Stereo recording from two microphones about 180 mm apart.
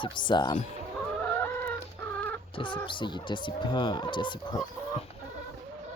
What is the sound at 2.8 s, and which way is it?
Speech, 25° left (ahead or behind).